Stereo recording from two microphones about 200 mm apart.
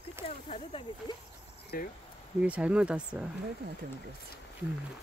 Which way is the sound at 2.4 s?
5° right (ahead or behind).